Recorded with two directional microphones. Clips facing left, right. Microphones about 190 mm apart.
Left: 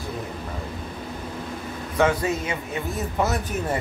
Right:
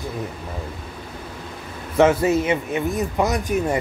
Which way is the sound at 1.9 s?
25° right (ahead or behind).